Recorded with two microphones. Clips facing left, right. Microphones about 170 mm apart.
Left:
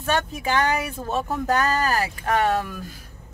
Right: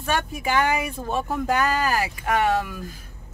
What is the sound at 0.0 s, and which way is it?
Speech, 10° right (ahead or behind).